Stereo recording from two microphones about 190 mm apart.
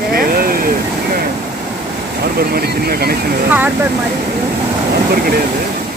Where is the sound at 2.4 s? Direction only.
55° right (ahead or behind).